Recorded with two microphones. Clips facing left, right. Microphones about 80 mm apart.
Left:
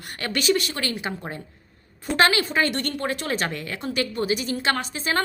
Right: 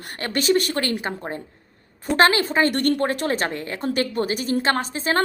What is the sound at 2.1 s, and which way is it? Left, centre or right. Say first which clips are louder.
A woman's voice: right 3 dB; right.